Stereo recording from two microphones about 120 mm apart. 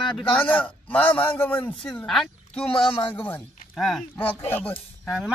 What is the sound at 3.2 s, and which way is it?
Speech, 15° left (ahead or behind).